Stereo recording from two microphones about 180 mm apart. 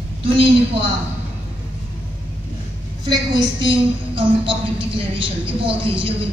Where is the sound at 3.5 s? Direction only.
25° right (ahead or behind).